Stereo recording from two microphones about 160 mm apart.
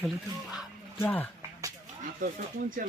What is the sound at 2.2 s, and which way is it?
Speech, 55° right (ahead or behind).